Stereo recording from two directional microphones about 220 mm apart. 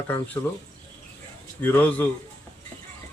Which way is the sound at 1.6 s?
10° left (ahead or behind).